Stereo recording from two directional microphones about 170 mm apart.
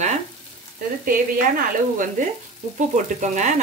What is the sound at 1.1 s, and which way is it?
Speech, 50° right (ahead or behind).